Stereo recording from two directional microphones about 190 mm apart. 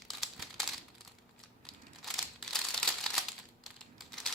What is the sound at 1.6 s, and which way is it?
Crumpling, 5° left (ahead or behind).